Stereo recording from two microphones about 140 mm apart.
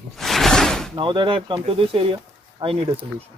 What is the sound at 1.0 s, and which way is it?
Speech, 35° right (ahead or behind).